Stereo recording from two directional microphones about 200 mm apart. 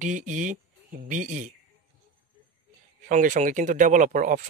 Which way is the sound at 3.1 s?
40° right (ahead or behind).